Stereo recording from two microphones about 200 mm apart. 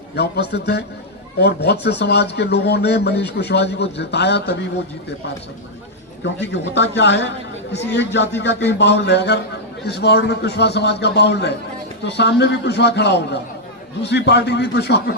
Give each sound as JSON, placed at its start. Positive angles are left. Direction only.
{"t": 0.2, "sound": "speech", "side_deg": 55}
{"t": 6.2, "sound": "speech", "side_deg": 60}